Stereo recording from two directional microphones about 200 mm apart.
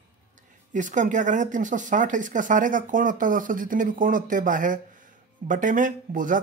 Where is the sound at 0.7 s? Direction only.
40° right (ahead or behind).